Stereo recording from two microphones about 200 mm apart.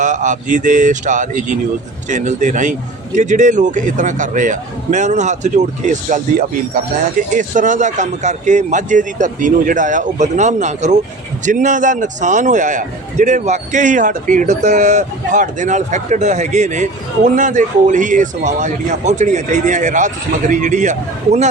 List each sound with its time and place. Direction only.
0.0 s a man's voice: 40° right (ahead or behind)
7.2 s a man's voice: 40° right (ahead or behind)